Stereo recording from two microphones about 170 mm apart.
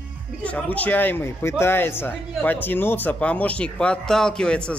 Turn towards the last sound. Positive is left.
turn(degrees=5)  # may be behind; listen again after turning